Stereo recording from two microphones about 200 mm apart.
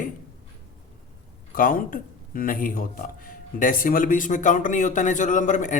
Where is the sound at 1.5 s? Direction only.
45° left (ahead or behind).